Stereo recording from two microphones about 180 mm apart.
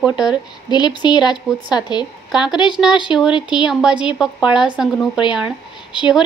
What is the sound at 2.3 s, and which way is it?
A woman's voice, 5° right (ahead or behind).